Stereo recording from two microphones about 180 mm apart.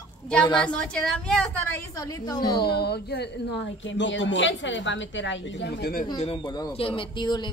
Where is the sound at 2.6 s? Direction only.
60° left (ahead or behind).